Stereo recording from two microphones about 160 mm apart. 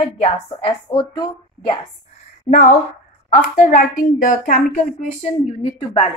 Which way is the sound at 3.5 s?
55° left (ahead or behind).